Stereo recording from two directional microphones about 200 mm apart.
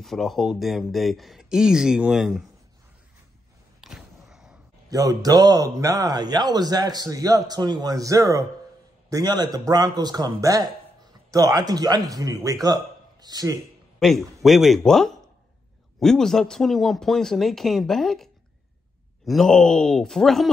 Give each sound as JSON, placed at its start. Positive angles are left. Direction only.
{"t": 0.0, "sound": "speech", "side_deg": 0}
{"t": 3.8, "sound": "a sound", "side_deg": 0}
{"t": 4.8, "sound": "speech", "side_deg": -20}
{"t": 13.9, "sound": "speech", "side_deg": 0}